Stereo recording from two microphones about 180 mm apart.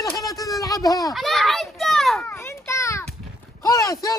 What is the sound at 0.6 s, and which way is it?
Speech, 20° left (ahead or behind).